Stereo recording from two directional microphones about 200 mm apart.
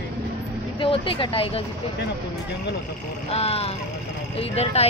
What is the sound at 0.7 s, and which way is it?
Speech, 25° left (ahead or behind).